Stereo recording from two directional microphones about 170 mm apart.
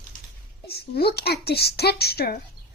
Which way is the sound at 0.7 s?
70° left (ahead or behind).